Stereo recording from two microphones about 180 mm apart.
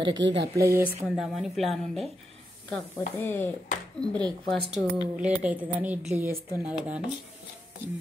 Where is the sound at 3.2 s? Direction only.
10° left (ahead or behind).